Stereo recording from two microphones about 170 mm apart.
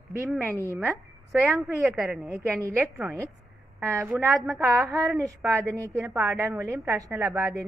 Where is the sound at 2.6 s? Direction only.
15° right (ahead or behind).